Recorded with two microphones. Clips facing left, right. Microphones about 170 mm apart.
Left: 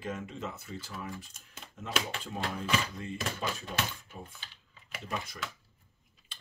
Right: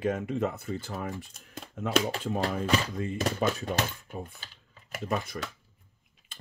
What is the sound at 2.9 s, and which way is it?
Speech, 55° right (ahead or behind).